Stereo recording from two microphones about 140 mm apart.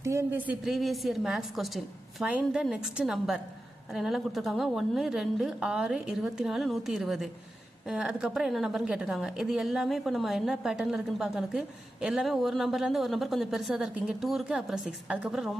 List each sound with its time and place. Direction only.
0.0 s speech: 20° right (ahead or behind)
0.6 s a woman's voice: centre (ahead or behind)